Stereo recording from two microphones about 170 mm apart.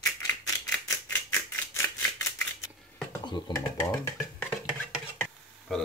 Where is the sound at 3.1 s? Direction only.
25° left (ahead or behind).